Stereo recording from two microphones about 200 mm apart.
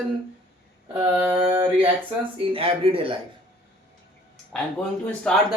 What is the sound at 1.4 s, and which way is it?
Speech, 25° right (ahead or behind).